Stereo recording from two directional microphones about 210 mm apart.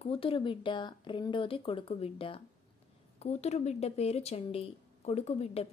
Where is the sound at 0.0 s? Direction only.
25° left (ahead or behind).